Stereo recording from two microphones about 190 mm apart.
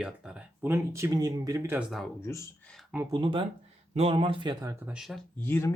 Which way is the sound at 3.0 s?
20° right (ahead or behind).